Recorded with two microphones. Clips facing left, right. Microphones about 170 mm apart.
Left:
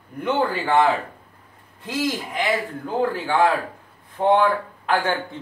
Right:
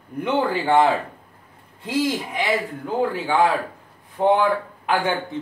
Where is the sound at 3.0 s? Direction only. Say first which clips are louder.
Even; 15° right (ahead or behind).